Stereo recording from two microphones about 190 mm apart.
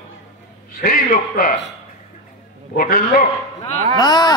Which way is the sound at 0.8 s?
50° left (ahead or behind).